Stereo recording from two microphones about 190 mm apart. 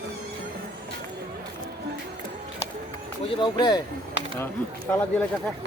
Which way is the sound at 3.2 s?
25° left (ahead or behind).